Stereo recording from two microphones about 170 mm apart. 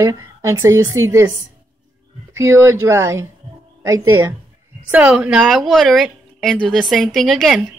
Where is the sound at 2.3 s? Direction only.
15° right (ahead or behind); by 7.6 s centre (ahead or behind).